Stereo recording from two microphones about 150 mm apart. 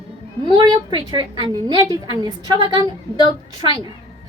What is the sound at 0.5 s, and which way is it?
A woman's voice, 30° right (ahead or behind).